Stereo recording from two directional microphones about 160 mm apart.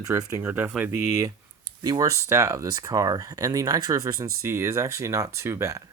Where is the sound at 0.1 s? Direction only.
15° right (ahead or behind).